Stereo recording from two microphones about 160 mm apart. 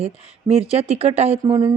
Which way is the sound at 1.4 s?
30° right (ahead or behind).